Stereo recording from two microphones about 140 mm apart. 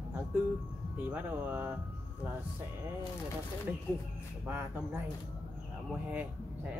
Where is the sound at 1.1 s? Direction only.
10° right (ahead or behind).